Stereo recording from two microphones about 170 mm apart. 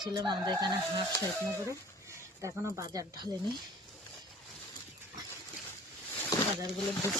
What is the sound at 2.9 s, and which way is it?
Speech, 25° right (ahead or behind).